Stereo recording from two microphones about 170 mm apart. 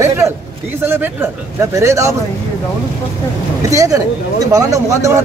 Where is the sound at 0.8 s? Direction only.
15° right (ahead or behind).